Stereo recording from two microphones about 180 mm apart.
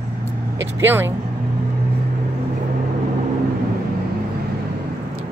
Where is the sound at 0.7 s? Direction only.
10° right (ahead or behind).